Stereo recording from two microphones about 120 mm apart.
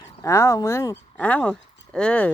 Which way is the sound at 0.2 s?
25° left (ahead or behind).